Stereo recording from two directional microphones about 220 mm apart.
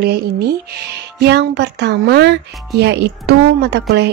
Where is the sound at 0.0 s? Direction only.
45° right (ahead or behind).